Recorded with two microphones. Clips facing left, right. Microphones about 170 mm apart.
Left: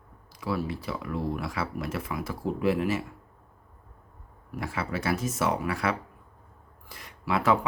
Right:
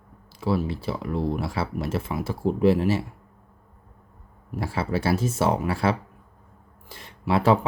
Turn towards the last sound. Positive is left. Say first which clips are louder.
# right 4 dB
turn(degrees=-30)  # may be behind; listen again after turning